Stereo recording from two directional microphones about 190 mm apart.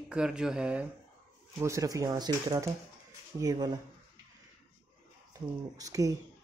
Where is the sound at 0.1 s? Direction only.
5° right (ahead or behind).